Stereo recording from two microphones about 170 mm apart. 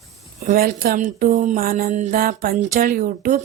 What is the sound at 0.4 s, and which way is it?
Music, 60° right (ahead or behind).